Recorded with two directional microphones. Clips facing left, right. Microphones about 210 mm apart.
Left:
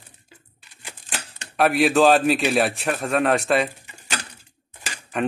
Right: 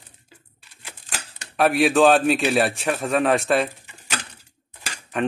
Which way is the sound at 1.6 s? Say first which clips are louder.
Even; centre (ahead or behind).